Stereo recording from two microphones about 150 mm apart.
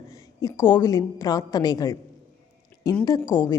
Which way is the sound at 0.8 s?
25° left (ahead or behind).